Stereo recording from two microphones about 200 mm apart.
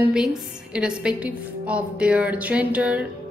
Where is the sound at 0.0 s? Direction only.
5° right (ahead or behind).